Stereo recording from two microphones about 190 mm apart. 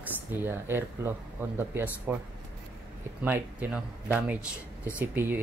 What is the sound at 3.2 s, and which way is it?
Speech, 10° right (ahead or behind).